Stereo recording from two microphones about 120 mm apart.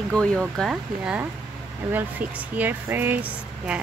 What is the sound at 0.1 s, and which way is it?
Speech, 5° left (ahead or behind).